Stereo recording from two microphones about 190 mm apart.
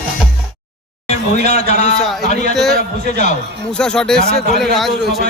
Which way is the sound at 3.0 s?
40° left (ahead or behind).